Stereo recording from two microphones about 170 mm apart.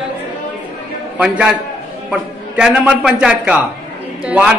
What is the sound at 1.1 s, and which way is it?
A man's voice, 5° right (ahead or behind).